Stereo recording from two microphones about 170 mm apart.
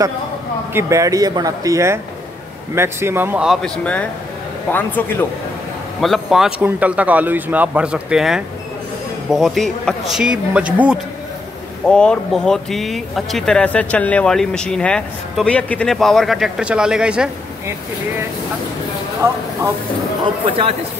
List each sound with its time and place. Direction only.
0.7 s a man's voice: 20° right (ahead or behind); by 5.2 s 10° left (ahead or behind)
5.9 s speech: centre (ahead or behind)
11.9 s speech: 5° left (ahead or behind)
19.2 s speech: 15° right (ahead or behind)
20.4 s speech: 40° right (ahead or behind)